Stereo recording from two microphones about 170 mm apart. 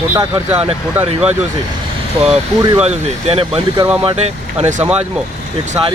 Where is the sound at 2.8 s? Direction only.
35° right (ahead or behind).